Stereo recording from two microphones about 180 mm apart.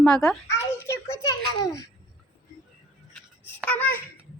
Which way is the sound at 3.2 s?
10° left (ahead or behind).